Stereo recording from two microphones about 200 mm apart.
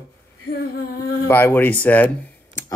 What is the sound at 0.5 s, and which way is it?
Female singing, 50° left (ahead or behind).